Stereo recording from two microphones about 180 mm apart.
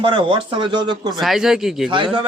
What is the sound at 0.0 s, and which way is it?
Speech, 30° right (ahead or behind).